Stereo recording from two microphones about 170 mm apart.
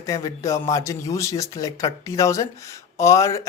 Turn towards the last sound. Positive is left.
turn(degrees=20)  # may be behind; listen again after turning